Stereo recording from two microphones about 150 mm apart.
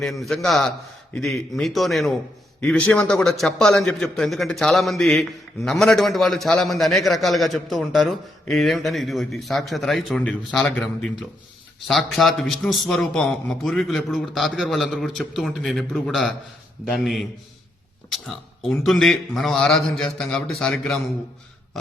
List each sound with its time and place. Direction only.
0.0 s a man's voice: centre (ahead or behind)